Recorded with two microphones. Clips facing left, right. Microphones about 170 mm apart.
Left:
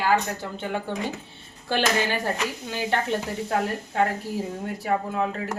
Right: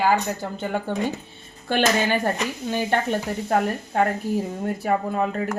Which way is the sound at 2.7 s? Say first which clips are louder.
Right 3 dB; 50° right (ahead or behind).